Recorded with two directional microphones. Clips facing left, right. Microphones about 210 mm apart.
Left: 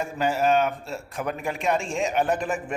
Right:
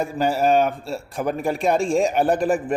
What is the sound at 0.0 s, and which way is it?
A man's voice, 35° right (ahead or behind).